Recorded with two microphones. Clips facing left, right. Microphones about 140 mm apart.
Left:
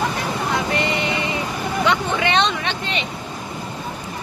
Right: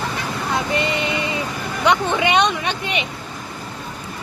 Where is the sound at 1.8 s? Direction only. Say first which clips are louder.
Right 3 dB; 20° right (ahead or behind).